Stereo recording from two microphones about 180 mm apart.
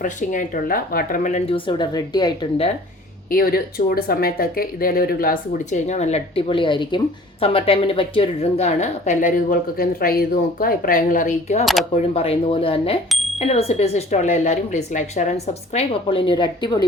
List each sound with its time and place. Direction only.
0.0 s speech: 45° left (ahead or behind); by 2.6 s 25° left (ahead or behind)
3.2 s speech: 55° left (ahead or behind)
11.6 s speech: centre (ahead or behind)
12.1 s a woman's voice: 30° left (ahead or behind)